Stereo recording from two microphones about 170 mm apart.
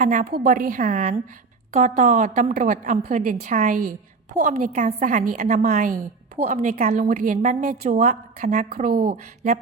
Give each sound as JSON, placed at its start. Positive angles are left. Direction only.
{"t": 0.0, "sound": "a woman's voice", "side_deg": -50}